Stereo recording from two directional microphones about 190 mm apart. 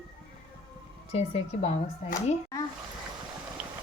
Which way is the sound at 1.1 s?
35° left (ahead or behind).